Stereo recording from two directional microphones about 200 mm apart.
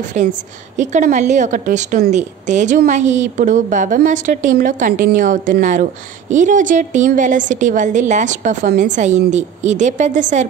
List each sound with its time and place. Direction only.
0.2 s a woman's voice: 35° right (ahead or behind)